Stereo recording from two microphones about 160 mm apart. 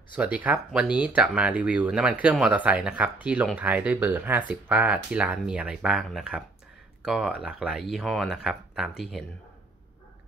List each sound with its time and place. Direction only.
0.1 s speech: 10° right (ahead or behind)